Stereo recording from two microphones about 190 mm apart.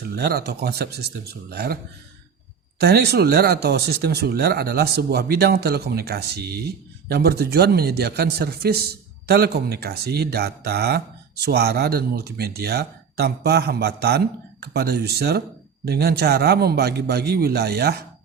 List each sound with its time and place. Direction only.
0.0 s speech: 55° right (ahead or behind)